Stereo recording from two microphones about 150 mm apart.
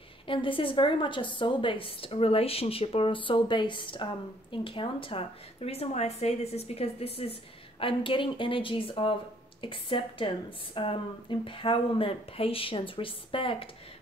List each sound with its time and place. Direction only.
0.3 s a woman's voice: 35° left (ahead or behind)